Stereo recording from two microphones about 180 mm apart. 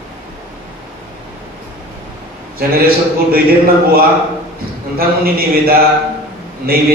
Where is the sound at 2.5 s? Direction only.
55° right (ahead or behind).